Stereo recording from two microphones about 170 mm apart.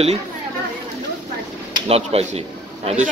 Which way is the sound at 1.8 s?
35° right (ahead or behind).